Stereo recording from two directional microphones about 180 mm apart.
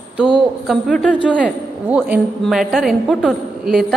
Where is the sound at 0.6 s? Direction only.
Centre (ahead or behind).